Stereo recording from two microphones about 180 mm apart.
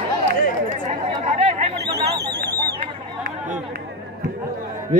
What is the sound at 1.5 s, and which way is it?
Chatter, 40° right (ahead or behind).